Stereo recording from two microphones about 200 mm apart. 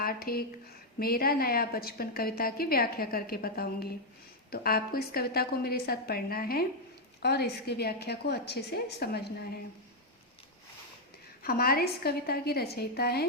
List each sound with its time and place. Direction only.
0.0 s a woman's voice: 50° left (ahead or behind)
11.4 s a woman's voice: 50° left (ahead or behind)